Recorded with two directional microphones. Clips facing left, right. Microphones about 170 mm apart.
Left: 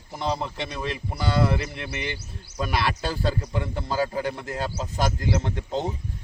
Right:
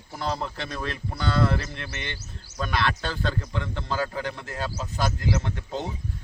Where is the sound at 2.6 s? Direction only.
10° left (ahead or behind).